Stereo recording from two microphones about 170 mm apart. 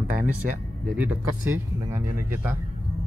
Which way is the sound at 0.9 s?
10° right (ahead or behind).